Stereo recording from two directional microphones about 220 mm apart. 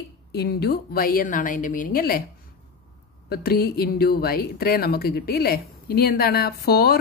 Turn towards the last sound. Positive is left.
turn(degrees=45)  # may be behind; listen again after turning